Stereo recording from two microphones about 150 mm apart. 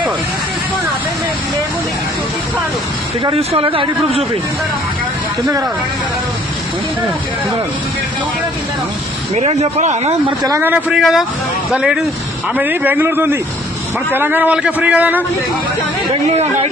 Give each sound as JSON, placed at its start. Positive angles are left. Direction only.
{"t": 3.3, "sound": "speech", "side_deg": -35}
{"t": 5.4, "sound": "speech", "side_deg": -25}
{"t": 9.3, "sound": "speech", "side_deg": -45}
{"t": 10.2, "sound": "speech", "side_deg": -25}
{"t": 10.6, "sound": "a man's voice", "side_deg": -10}